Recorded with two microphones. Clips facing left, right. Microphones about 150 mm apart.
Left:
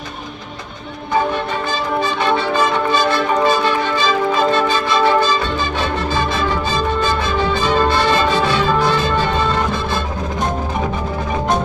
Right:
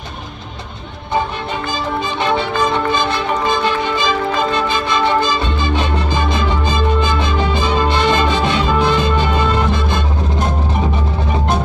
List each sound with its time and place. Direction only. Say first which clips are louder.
5.8 s music: even; 20° right (ahead or behind)